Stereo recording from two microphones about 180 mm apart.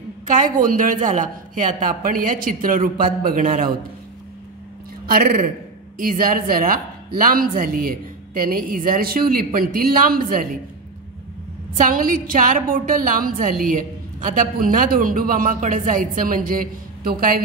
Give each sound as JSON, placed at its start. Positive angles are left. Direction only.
{"t": 0.3, "sound": "a woman's voice", "side_deg": -45}
{"t": 5.0, "sound": "a woman's voice", "side_deg": -55}
{"t": 11.7, "sound": "a woman's voice", "side_deg": -50}